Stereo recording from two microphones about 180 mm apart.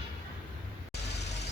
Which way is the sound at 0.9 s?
70° left (ahead or behind).